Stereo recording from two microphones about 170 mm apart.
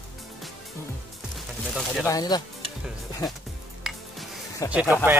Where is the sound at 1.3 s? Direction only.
Centre (ahead or behind).